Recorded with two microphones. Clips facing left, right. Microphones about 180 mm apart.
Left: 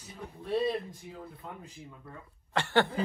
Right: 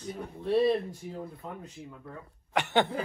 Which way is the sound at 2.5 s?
20° right (ahead or behind).